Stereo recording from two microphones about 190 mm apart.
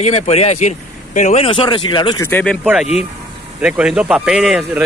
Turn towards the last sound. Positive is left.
turn(degrees=0)  # may be behind; listen again after turning